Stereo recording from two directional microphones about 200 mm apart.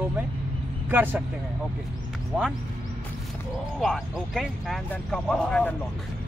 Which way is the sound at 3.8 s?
Centre (ahead or behind).